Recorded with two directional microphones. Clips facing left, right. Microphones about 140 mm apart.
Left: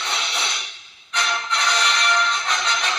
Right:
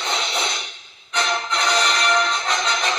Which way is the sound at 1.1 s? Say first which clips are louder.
Right 2 dB; 35° right (ahead or behind).